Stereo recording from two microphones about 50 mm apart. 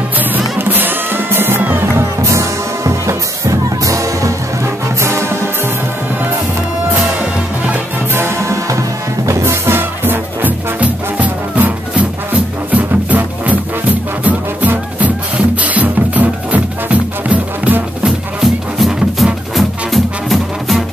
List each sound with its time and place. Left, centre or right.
0.6 s music: right
2.2 s music: right
5.0 s music: right
8.4 s music: right
10.8 s music: right
18.4 s music: centre